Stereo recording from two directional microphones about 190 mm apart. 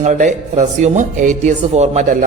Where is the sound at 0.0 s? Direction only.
40° right (ahead or behind).